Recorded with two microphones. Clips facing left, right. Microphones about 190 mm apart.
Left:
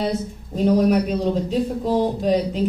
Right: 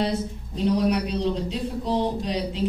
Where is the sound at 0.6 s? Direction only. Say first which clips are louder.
Left 5 dB; 45° left (ahead or behind).